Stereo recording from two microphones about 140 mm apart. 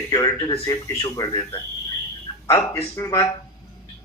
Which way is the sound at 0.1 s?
25° left (ahead or behind).